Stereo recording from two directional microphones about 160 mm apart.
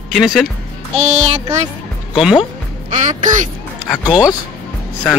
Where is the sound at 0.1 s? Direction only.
Centre (ahead or behind).